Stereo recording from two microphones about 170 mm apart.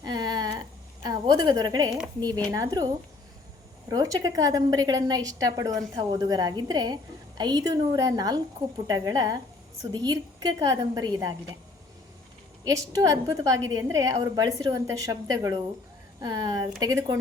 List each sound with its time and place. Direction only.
0.0 s a sound: 25° right (ahead or behind)
1.0 s a woman's voice: 25° right (ahead or behind)
12.6 s a woman's voice: 20° right (ahead or behind)